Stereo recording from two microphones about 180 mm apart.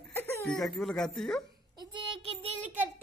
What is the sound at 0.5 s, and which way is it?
Speech, centre (ahead or behind).